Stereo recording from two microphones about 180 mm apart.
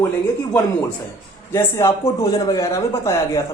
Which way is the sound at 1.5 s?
15° left (ahead or behind).